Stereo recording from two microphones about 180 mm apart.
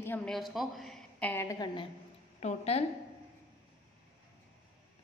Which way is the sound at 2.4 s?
35° left (ahead or behind).